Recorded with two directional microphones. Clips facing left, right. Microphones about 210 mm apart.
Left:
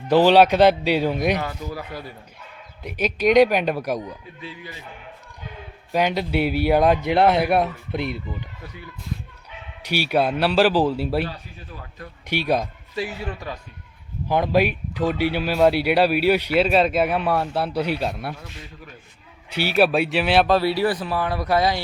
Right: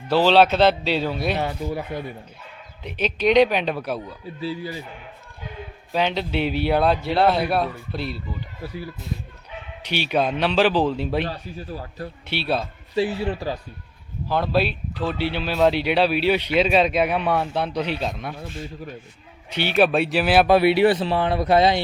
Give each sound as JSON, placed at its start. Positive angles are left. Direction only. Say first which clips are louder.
{"t": 0.1, "sound": "speech", "louder": "left 2 dB", "side_deg": 15}
{"t": 1.4, "sound": "speech", "louder": "right 4 dB", "side_deg": -25}
{"t": 2.8, "sound": "speech", "louder": "left 1 dB", "side_deg": 10}
{"t": 4.4, "sound": "speech", "louder": "right 9 dB", "side_deg": -35}
{"t": 5.9, "sound": "speech", "louder": "left 2 dB", "side_deg": 10}
{"t": 8.6, "sound": "speech", "louder": "right 7 dB", "side_deg": -30}
{"t": 9.8, "sound": "speech", "louder": "left 1 dB", "side_deg": 10}
{"t": 11.3, "sound": "speech", "louder": "right 6 dB", "side_deg": -35}
{"t": 12.3, "sound": "speech", "louder": "left 3 dB", "side_deg": 15}
{"t": 13.0, "sound": "speech", "louder": "right 6 dB", "side_deg": -30}
{"t": 14.3, "sound": "speech", "louder": "left 2 dB", "side_deg": 15}
{"t": 19.5, "sound": "speech", "louder": "even", "side_deg": 5}
{"t": 20.6, "sound": "speech", "louder": "right 5 dB", "side_deg": -20}